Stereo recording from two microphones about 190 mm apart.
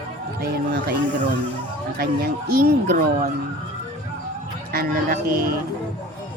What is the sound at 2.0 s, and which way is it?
Speech, 50° right (ahead or behind).